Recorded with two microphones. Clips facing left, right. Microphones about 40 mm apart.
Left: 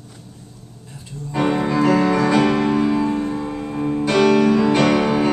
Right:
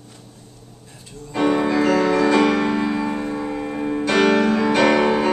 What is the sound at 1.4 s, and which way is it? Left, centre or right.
Music, centre.